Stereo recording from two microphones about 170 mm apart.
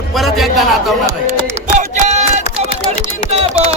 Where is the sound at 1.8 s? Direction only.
45° right (ahead or behind).